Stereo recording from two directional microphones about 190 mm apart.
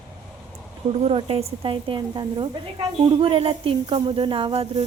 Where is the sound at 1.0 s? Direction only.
30° right (ahead or behind).